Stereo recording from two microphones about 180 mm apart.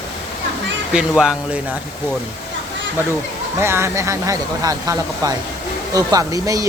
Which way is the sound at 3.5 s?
15° right (ahead or behind).